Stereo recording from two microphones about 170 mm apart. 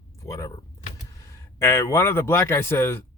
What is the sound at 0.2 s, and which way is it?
Vehicle, 20° left (ahead or behind).